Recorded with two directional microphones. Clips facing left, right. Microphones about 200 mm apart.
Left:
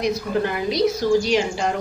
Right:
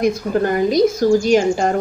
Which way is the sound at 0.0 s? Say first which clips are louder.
Right 5 dB; 45° right (ahead or behind).